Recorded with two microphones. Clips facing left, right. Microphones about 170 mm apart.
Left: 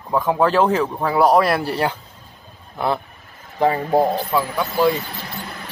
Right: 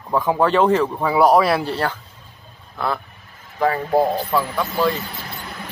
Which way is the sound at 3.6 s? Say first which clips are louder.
Left 1 dB; 15° left (ahead or behind).